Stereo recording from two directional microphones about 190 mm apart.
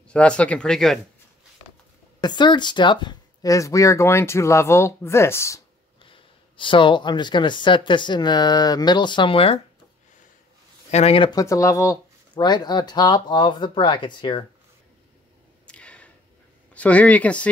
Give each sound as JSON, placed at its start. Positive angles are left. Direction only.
{"t": 0.1, "sound": "speech", "side_deg": 5}
{"t": 2.1, "sound": "speech", "side_deg": 25}
{"t": 6.0, "sound": "speech", "side_deg": 25}
{"t": 10.9, "sound": "speech", "side_deg": 35}
{"t": 15.6, "sound": "a sound", "side_deg": 5}
{"t": 16.7, "sound": "speech", "side_deg": 5}